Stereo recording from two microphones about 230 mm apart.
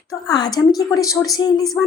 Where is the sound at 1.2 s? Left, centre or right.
Centre.